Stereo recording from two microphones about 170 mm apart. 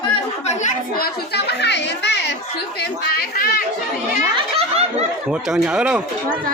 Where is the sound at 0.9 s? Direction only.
70° left (ahead or behind); by 2.3 s 90° left.